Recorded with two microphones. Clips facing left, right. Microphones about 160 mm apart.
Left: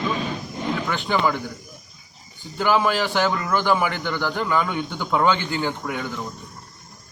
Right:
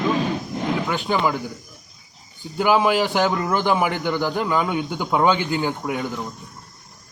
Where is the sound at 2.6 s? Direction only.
15° right (ahead or behind).